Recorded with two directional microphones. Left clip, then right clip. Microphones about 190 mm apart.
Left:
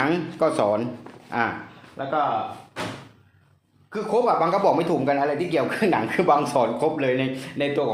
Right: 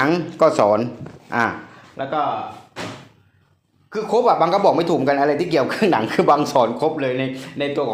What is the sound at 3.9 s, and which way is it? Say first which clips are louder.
Speech: right 4 dB; 45° right (ahead or behind).